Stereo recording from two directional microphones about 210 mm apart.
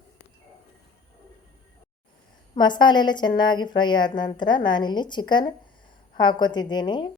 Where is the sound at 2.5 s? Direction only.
20° left (ahead or behind).